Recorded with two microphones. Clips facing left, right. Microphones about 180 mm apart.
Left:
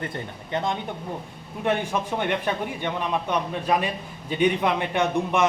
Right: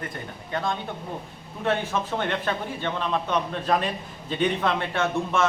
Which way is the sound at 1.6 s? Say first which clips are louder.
Left 1 dB; 15° left (ahead or behind).